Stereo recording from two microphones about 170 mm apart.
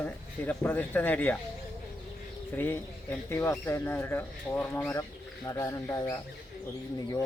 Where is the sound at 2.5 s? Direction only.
10° left (ahead or behind).